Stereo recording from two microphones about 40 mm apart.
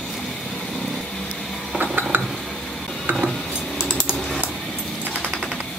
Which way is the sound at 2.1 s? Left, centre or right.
Right.